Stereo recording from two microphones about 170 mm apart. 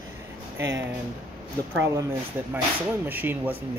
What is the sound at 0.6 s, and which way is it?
Speech, 15° right (ahead or behind).